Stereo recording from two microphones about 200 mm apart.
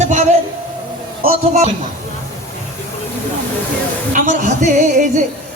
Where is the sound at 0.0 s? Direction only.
35° right (ahead or behind).